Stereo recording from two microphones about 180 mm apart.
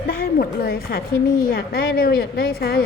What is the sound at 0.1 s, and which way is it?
A woman's voice, 60° left (ahead or behind).